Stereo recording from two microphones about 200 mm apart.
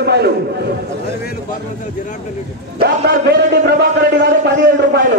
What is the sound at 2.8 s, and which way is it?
A man's voice, 55° right (ahead or behind).